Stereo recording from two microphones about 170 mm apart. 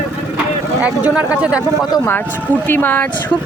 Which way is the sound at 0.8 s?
10° right (ahead or behind).